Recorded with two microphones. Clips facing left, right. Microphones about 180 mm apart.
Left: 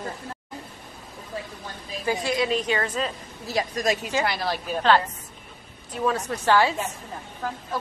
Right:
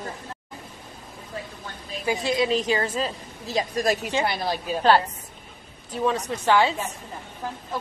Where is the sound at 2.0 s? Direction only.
20° right (ahead or behind).